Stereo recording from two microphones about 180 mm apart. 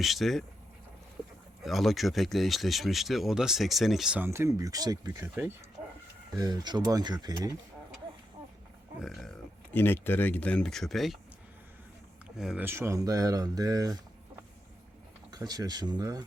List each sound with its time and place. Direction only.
0.0 s speech: centre (ahead or behind)
1.6 s speech: centre (ahead or behind); by 5.3 s 20° right (ahead or behind)
6.3 s speech: 20° right (ahead or behind)
9.0 s speech: centre (ahead or behind)
12.4 s speech: 5° right (ahead or behind)
15.3 s speech: 20° right (ahead or behind)